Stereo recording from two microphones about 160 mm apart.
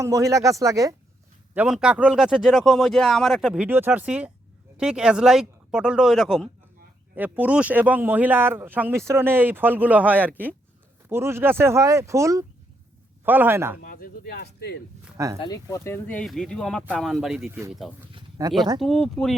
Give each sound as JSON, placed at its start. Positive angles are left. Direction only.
{"t": 0.0, "sound": "speech", "side_deg": -20}
{"t": 1.5, "sound": "speech", "side_deg": -5}
{"t": 13.8, "sound": "speech", "side_deg": 65}
{"t": 15.4, "sound": "speech", "side_deg": 25}
{"t": 16.2, "sound": "speech", "side_deg": 0}
{"t": 18.4, "sound": "speech", "side_deg": -20}
{"t": 18.8, "sound": "speech", "side_deg": 0}